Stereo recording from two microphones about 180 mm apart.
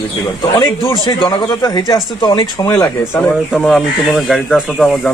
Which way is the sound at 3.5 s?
Centre (ahead or behind).